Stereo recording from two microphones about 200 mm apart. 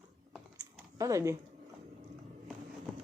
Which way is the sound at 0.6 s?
15° right (ahead or behind).